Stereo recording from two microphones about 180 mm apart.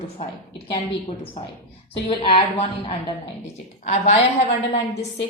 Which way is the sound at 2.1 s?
30° left (ahead or behind).